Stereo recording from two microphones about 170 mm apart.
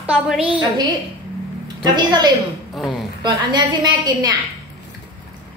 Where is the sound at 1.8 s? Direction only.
25° right (ahead or behind).